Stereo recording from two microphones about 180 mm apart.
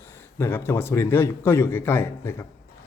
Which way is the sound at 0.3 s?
15° left (ahead or behind).